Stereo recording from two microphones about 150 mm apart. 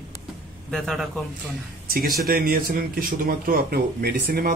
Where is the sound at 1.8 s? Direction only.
75° right (ahead or behind).